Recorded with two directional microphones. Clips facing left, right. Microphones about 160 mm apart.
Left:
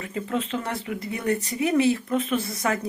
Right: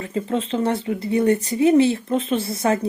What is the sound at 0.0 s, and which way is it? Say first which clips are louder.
Speech: right 4 dB; 30° right (ahead or behind).